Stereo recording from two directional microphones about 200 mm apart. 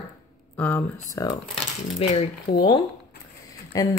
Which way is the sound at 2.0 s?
30° left (ahead or behind).